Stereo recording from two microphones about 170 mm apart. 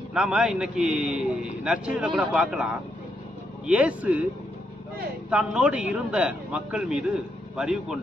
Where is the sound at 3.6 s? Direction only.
10° right (ahead or behind).